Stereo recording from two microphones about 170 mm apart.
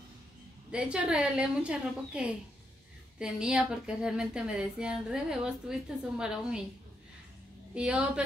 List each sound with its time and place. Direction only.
0.7 s speech: 5° right (ahead or behind)
7.7 s speech: 5° right (ahead or behind)